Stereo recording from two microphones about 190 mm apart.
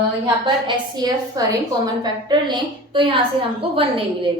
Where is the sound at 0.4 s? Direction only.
25° right (ahead or behind).